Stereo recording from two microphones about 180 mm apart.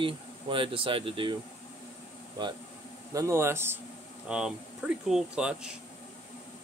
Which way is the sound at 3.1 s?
15° right (ahead or behind).